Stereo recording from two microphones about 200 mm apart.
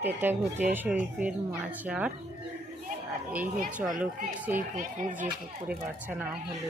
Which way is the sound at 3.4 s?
40° right (ahead or behind).